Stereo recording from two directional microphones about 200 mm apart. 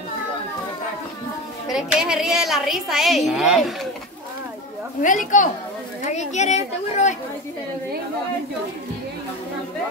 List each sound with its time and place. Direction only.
1.7 s a woman's voice: 5° right (ahead or behind)
5.0 s speech: 40° left (ahead or behind)